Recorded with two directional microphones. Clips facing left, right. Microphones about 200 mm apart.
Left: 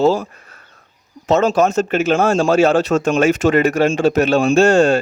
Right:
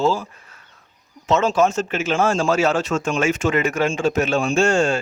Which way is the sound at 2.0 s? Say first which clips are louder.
Left 3 dB; 40° left (ahead or behind).